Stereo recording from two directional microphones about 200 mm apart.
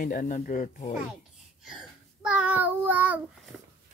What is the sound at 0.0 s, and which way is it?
Speech, 40° left (ahead or behind).